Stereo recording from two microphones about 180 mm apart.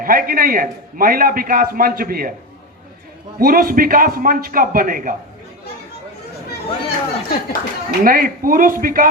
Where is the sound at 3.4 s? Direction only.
55° right (ahead or behind).